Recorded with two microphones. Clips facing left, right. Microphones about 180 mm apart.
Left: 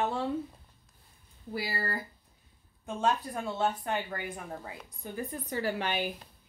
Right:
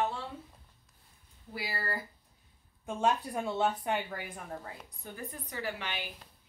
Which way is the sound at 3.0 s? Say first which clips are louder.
Even; 10° right (ahead or behind).